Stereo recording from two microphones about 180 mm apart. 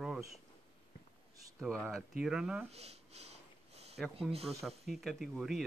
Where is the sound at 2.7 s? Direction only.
35° right (ahead or behind).